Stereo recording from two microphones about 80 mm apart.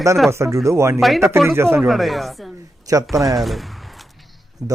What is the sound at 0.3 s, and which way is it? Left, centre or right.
Speech, right.